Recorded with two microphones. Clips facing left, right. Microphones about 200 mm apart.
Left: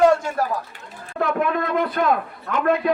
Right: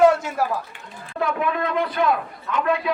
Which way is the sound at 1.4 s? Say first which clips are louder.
Left 2 dB; 50° left (ahead or behind).